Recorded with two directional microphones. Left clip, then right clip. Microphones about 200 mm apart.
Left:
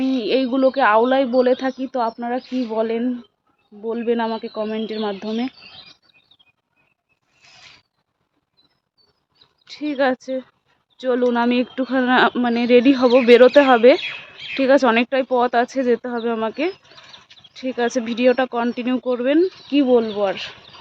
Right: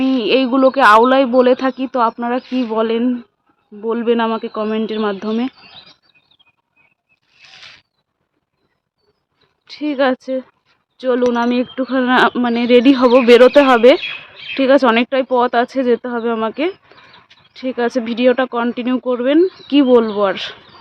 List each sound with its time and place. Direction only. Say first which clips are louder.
0.0 s speech: right 5 dB; 15° right (ahead or behind)
9.6 s speech: right 4 dB; 15° right (ahead or behind)